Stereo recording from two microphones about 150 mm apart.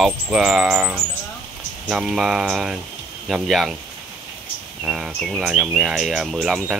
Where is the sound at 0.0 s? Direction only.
5° right (ahead or behind).